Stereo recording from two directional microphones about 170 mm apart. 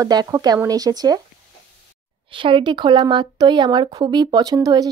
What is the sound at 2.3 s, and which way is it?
Speech, 30° right (ahead or behind).